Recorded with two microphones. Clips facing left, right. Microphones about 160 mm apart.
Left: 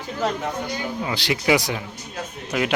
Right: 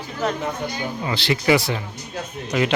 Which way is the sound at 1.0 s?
10° left (ahead or behind).